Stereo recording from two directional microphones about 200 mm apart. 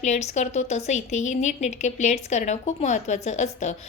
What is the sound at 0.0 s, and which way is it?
A woman's voice, 35° left (ahead or behind).